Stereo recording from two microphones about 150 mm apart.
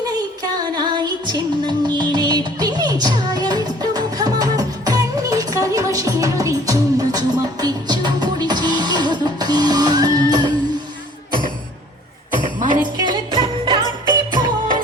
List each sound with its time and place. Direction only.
0.6 s music: 30° right (ahead or behind)
12.5 s jingle bell: 60° right (ahead or behind)
13.0 s music: 30° right (ahead or behind)